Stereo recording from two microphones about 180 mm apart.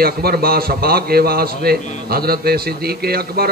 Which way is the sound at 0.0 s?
60° right (ahead or behind).